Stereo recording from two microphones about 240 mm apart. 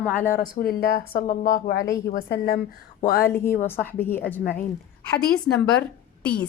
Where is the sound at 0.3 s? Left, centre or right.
Left.